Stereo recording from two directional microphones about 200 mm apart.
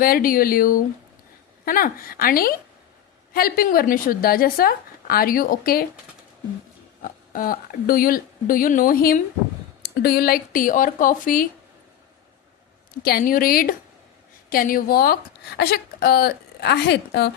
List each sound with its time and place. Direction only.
0.0 s a woman's voice: 45° left (ahead or behind)
7.0 s a woman's voice: 45° left (ahead or behind)
13.0 s a woman's voice: 50° left (ahead or behind)